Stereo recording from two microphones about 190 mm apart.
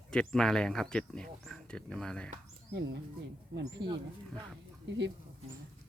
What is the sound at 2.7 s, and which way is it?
Speech, 60° right (ahead or behind).